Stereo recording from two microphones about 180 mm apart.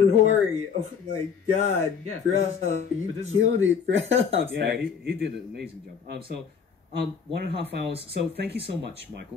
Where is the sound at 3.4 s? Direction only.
90° right; by 7.9 s 70° right (ahead or behind).